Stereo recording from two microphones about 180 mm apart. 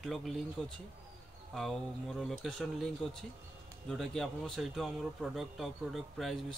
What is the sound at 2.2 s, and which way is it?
Speech, centre (ahead or behind).